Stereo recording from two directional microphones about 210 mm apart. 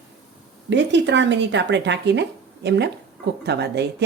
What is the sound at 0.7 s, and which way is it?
Speech, 60° right (ahead or behind).